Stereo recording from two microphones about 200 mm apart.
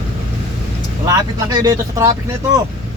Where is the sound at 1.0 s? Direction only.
20° right (ahead or behind).